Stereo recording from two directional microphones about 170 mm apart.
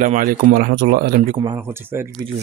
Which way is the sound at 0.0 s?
55° right (ahead or behind).